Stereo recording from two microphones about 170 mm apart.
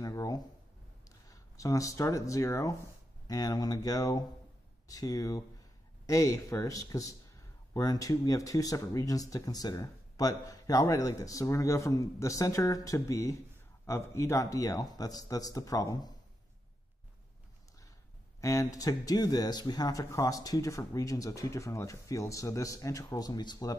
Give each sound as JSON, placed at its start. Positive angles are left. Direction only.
{"t": 0.0, "sound": "a sound", "side_deg": 20}
{"t": 1.0, "sound": "speech", "side_deg": 20}
{"t": 18.4, "sound": "speech", "side_deg": 20}